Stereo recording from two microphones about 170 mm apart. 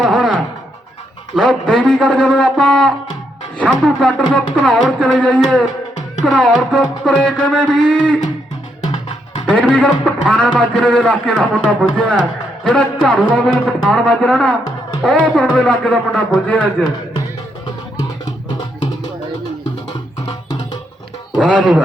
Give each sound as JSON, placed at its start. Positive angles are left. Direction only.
{"t": 0.0, "sound": "music", "side_deg": 0}
{"t": 1.4, "sound": "music", "side_deg": 0}
{"t": 5.2, "sound": "a man's voice", "side_deg": 5}
{"t": 6.2, "sound": "music", "side_deg": 0}
{"t": 8.9, "sound": "music", "side_deg": 30}
{"t": 9.7, "sound": "a man's voice", "side_deg": 10}
{"t": 10.5, "sound": "music", "side_deg": 5}
{"t": 15.5, "sound": "a man's voice", "side_deg": 5}
{"t": 21.3, "sound": "speech", "side_deg": -5}